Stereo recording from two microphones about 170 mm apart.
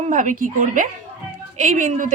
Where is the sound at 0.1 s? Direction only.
50° right (ahead or behind).